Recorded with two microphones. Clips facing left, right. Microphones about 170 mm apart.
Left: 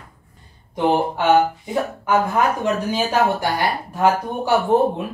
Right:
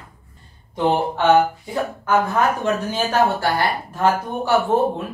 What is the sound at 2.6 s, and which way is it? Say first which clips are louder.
Speech: left 1 dB; 15° left (ahead or behind).